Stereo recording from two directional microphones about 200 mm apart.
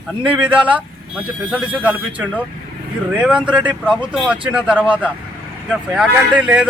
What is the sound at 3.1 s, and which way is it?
Speech, 5° right (ahead or behind).